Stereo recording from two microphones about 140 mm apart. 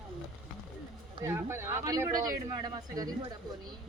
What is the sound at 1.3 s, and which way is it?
Speech, 20° right (ahead or behind).